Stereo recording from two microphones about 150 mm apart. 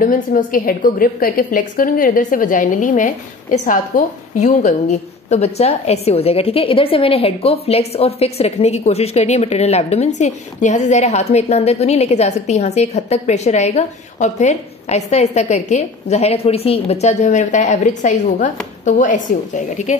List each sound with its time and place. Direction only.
0.0 s a woman's voice: 65° left (ahead or behind)